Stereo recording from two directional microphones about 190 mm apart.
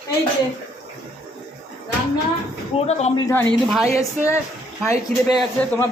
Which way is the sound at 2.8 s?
35° left (ahead or behind).